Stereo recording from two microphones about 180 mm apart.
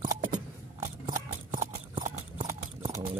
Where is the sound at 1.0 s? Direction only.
45° right (ahead or behind).